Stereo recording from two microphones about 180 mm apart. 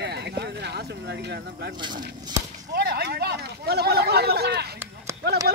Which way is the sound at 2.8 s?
60° right (ahead or behind).